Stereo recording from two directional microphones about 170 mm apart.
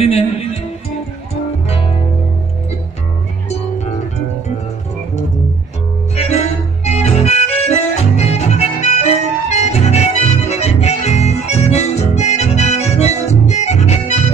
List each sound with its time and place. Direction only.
1.3 s music: 35° left (ahead or behind)
6.1 s organ: 40° left (ahead or behind)